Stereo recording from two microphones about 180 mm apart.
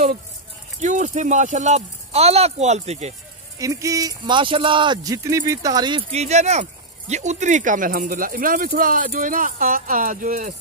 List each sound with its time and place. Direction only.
0.7 s speech: 40° right (ahead or behind)
3.5 s speech: 20° right (ahead or behind); by 10.5 s 45° right (ahead or behind)